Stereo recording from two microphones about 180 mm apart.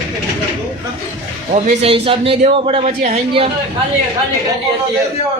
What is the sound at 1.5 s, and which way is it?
A man's voice, 35° right (ahead or behind).